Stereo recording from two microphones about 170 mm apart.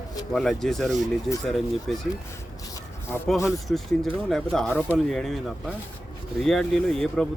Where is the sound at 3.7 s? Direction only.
5° left (ahead or behind).